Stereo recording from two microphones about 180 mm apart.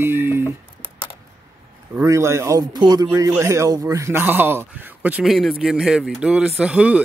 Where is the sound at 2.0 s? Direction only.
15° right (ahead or behind).